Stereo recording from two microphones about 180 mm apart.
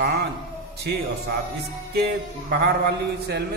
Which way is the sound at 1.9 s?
65° right (ahead or behind).